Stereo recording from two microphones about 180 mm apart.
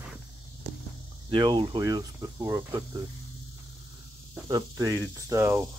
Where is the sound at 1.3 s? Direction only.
25° right (ahead or behind).